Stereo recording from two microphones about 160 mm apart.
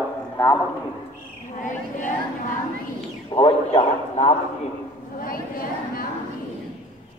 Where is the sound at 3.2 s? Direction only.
35° left (ahead or behind).